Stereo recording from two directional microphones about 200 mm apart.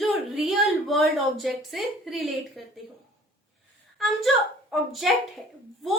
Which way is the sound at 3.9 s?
Centre (ahead or behind).